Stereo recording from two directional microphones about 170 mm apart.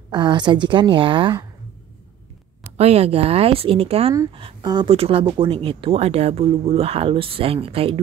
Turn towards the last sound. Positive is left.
turn(degrees=-35)  # may be behind; listen again after turning